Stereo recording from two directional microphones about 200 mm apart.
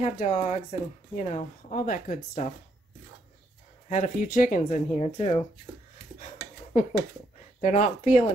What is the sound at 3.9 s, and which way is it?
Speech, 40° left (ahead or behind).